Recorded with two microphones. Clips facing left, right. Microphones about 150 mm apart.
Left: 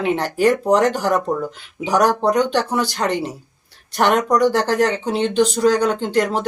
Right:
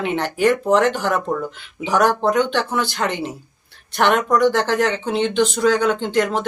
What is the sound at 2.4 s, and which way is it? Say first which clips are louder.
Speech: left 1 dB; 40° left (ahead or behind).